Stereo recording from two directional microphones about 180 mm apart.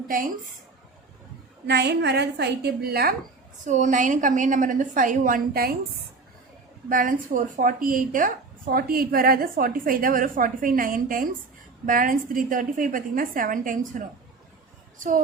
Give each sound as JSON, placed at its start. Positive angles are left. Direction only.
{"t": 1.6, "sound": "a woman's voice", "side_deg": -70}
{"t": 3.7, "sound": "a woman's voice", "side_deg": -45}
{"t": 6.8, "sound": "a woman's voice", "side_deg": -50}